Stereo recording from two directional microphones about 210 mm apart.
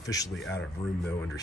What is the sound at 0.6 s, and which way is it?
Speech, centre (ahead or behind).